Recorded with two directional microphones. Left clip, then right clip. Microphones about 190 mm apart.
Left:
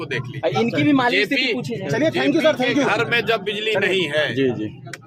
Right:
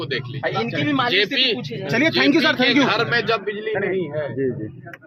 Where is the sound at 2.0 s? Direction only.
50° right (ahead or behind).